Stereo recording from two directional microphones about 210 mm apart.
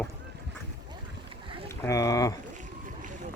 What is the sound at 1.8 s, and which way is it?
Speech, 15° left (ahead or behind).